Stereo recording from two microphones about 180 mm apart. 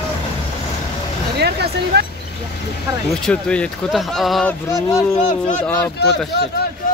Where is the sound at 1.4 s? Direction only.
65° right (ahead or behind).